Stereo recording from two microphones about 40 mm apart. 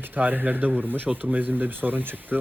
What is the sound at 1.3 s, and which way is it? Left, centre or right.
Speech, right.